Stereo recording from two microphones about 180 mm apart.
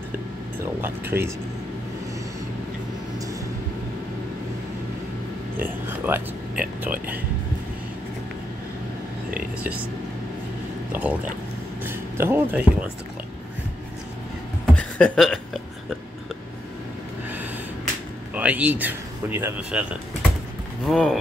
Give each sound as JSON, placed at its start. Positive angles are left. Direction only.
{"t": 0.7, "sound": "speech", "side_deg": -10}
{"t": 5.9, "sound": "speech", "side_deg": -10}
{"t": 9.6, "sound": "speech", "side_deg": -10}
{"t": 10.9, "sound": "speech", "side_deg": -10}
{"t": 14.8, "sound": "a sound", "side_deg": 5}
{"t": 18.3, "sound": "speech", "side_deg": -10}